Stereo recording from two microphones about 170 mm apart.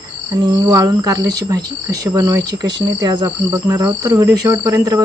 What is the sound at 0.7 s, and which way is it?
Speech, 20° right (ahead or behind).